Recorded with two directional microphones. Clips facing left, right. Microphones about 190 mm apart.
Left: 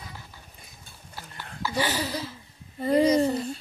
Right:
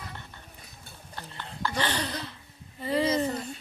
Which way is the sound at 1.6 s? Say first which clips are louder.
Left 2 dB; 5° left (ahead or behind).